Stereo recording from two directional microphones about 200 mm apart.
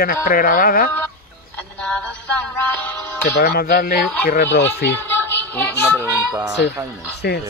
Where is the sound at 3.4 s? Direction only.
50° left (ahead or behind).